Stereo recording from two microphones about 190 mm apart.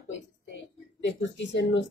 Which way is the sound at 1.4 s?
75° left (ahead or behind).